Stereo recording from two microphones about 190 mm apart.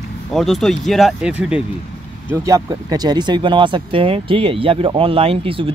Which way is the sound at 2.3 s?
15° right (ahead or behind).